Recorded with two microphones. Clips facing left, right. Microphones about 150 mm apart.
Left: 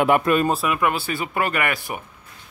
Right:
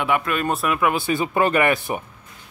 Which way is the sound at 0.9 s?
20° right (ahead or behind).